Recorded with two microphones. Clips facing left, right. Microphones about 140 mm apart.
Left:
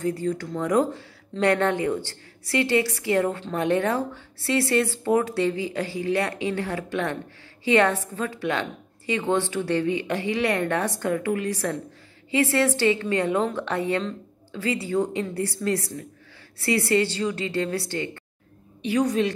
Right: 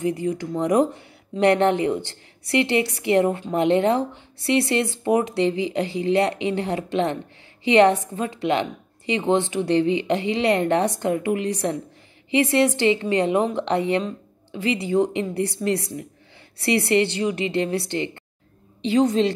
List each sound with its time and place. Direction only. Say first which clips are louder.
0.0 s speech: right 2 dB; 15° right (ahead or behind)